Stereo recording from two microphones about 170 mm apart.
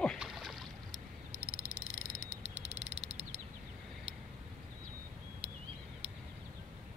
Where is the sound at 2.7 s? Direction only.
40° right (ahead or behind).